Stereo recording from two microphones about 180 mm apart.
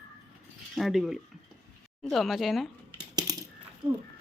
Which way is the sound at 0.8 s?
Centre (ahead or behind).